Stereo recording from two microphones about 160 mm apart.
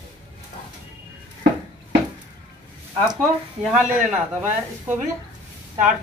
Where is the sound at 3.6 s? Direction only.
5° right (ahead or behind).